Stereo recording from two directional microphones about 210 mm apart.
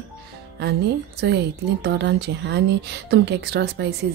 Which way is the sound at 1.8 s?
55° right (ahead or behind).